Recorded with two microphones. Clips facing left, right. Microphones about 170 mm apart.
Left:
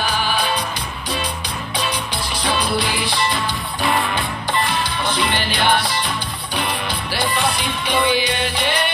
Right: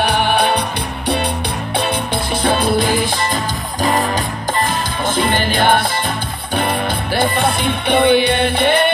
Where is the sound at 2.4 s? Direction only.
50° right (ahead or behind).